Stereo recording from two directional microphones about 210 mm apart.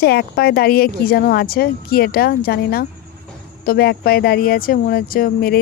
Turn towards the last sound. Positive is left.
turn(degrees=45)  # may be behind; listen again after turning